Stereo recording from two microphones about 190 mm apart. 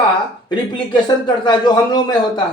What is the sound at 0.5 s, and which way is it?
A man's voice, 25° left (ahead or behind).